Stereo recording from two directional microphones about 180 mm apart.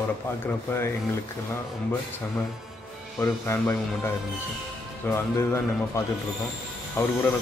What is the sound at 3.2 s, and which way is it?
A man's voice, 15° left (ahead or behind).